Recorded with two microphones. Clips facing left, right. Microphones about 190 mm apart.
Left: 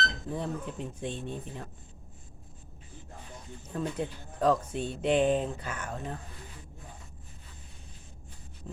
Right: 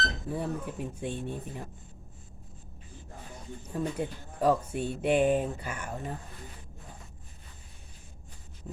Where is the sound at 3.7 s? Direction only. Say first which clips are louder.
Right 1 dB; 10° right (ahead or behind).